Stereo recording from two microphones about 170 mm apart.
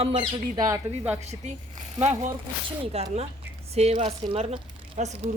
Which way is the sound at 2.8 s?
35° right (ahead or behind).